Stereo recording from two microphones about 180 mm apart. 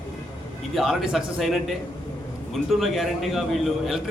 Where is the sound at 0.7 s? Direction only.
Centre (ahead or behind).